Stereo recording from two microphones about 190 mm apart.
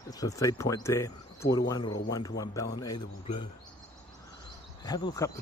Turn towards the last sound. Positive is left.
turn(degrees=20)  # may be behind; listen again after turning